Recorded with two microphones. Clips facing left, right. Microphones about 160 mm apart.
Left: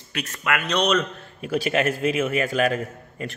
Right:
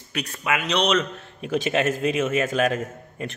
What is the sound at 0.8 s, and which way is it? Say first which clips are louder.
A man's voice: even; centre (ahead or behind).